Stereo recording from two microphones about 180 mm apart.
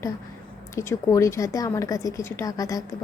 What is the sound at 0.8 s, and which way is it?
A woman's voice, 15° left (ahead or behind).